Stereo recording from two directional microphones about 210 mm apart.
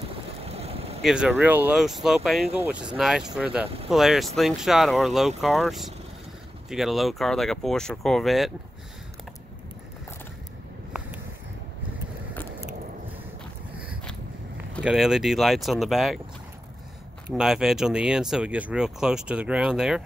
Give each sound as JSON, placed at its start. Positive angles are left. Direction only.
{"t": 0.5, "sound": "boat", "side_deg": -30}
{"t": 1.0, "sound": "speech", "side_deg": -5}
{"t": 14.8, "sound": "speech", "side_deg": -5}
{"t": 17.3, "sound": "speech", "side_deg": -5}